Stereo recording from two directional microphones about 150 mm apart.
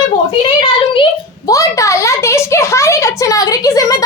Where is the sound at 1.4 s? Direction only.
20° left (ahead or behind).